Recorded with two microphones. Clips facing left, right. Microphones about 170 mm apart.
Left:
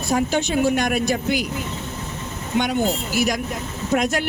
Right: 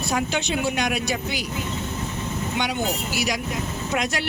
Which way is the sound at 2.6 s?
50° left (ahead or behind).